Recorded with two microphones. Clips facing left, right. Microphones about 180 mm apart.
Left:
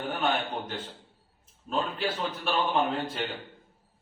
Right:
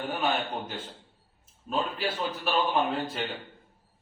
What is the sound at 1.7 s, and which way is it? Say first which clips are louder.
A man's voice: even; 5° right (ahead or behind).